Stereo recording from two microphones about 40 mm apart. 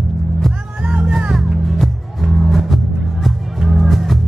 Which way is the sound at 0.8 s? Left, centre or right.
Right.